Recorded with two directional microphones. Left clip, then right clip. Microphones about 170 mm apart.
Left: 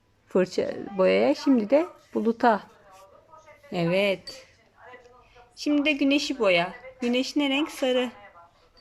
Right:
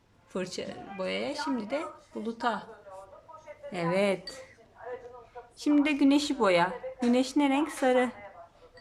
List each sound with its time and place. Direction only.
0.3 s speech: 35° left (ahead or behind)
3.7 s a woman's voice: 20° left (ahead or behind)
5.6 s a woman's voice: 5° left (ahead or behind)